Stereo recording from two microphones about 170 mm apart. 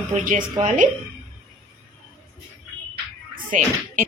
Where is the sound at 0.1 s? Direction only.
45° right (ahead or behind).